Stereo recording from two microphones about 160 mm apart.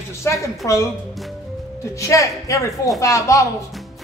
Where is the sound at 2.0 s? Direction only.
20° left (ahead or behind).